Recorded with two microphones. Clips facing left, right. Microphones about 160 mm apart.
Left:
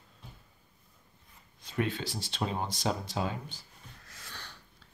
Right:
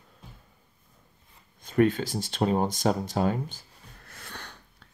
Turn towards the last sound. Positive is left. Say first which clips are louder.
# right 4 dB
turn(degrees=-55)  # may be behind; listen again after turning